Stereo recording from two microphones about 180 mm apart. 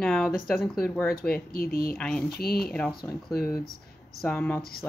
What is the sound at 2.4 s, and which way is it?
Speech, 60° left (ahead or behind).